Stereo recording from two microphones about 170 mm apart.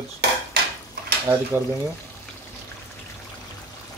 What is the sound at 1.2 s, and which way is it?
Speech, 15° right (ahead or behind).